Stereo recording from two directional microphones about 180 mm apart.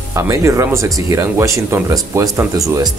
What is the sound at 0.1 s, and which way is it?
Speech, 15° right (ahead or behind).